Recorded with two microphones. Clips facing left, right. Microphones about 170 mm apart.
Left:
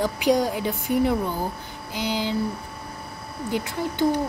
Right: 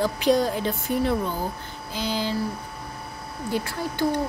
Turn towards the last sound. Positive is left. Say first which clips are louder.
# left 2 dB
turn(degrees=20)  # may be behind; listen again after turning